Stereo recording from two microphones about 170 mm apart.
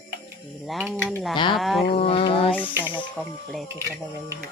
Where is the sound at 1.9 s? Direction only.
35° left (ahead or behind).